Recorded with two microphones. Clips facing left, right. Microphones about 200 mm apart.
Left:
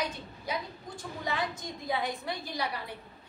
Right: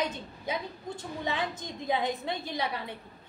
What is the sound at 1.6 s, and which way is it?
A woman's voice, 20° right (ahead or behind).